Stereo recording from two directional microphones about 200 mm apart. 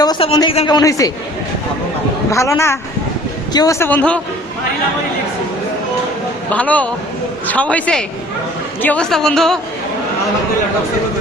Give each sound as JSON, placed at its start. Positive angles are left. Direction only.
{"t": 0.0, "sound": "a man's voice", "side_deg": 20}
{"t": 2.3, "sound": "speech", "side_deg": 15}
{"t": 6.5, "sound": "a woman's voice", "side_deg": 5}